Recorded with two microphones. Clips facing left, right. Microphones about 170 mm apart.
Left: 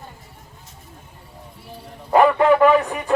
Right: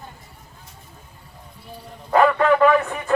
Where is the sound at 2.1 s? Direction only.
15° left (ahead or behind).